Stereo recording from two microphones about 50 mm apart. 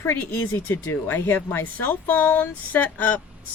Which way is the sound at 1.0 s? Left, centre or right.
Left.